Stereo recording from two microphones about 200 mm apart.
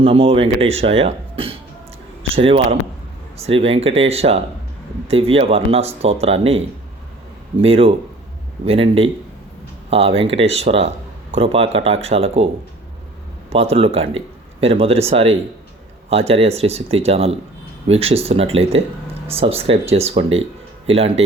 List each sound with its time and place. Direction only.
0.0 s speech: 25° right (ahead or behind)
7.6 s speech: 30° right (ahead or behind)
13.5 s speech: 30° right (ahead or behind)